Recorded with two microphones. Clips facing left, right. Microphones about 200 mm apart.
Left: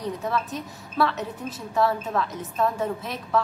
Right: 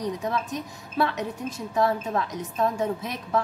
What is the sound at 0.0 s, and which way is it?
A woman's voice, 15° right (ahead or behind).